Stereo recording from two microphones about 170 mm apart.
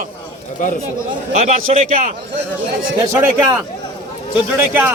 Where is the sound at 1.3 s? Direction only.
50° right (ahead or behind).